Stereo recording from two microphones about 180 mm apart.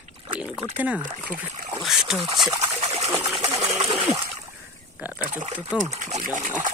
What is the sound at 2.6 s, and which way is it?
Trickle, 35° right (ahead or behind).